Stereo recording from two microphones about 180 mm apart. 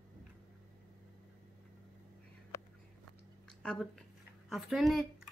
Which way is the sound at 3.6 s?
5° left (ahead or behind).